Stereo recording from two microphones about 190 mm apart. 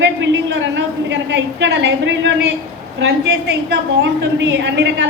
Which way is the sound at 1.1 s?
70° right (ahead or behind).